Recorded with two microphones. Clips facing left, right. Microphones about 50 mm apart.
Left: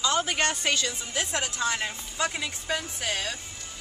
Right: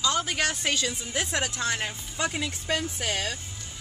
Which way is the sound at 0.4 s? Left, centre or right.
Centre.